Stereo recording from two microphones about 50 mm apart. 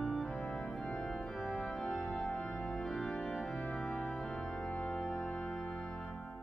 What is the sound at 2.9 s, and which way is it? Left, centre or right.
Organ, centre.